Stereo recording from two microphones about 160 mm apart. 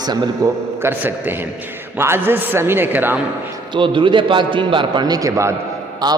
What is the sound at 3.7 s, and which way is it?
A man's voice, 30° right (ahead or behind).